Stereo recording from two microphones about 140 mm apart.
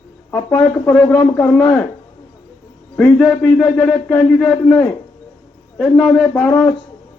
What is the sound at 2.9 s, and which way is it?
A man's voice, 10° left (ahead or behind).